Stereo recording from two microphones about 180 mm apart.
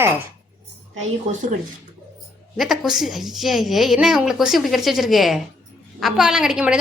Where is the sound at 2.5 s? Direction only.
Centre (ahead or behind).